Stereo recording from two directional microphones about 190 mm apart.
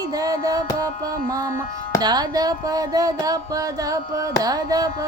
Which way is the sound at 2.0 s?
20° right (ahead or behind).